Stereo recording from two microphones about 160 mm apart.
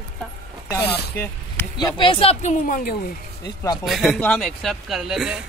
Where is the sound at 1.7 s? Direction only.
30° left (ahead or behind); by 2.9 s 50° left (ahead or behind).